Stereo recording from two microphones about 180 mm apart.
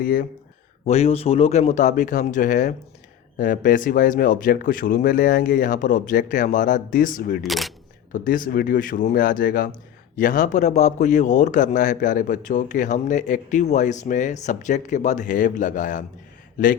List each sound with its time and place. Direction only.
0.0 s a man's voice: 50° left (ahead or behind)
0.9 s a man's voice: 35° left (ahead or behind)
7.4 s speech: centre (ahead or behind)
8.1 s a man's voice: 50° left (ahead or behind)